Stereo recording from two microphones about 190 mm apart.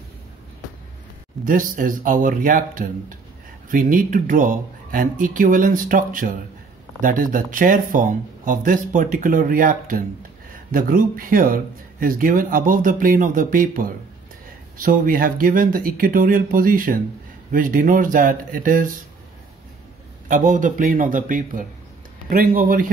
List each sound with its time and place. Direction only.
1.4 s speech: 45° right (ahead or behind)
20.2 s speech: 45° right (ahead or behind)